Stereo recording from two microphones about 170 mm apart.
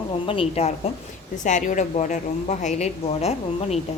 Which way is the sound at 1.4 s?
45° left (ahead or behind).